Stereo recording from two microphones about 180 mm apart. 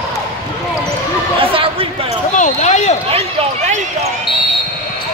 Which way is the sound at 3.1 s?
35° right (ahead or behind).